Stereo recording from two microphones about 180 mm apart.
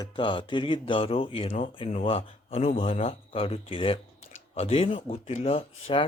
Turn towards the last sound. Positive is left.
turn(degrees=30)  # may be behind; listen again after turning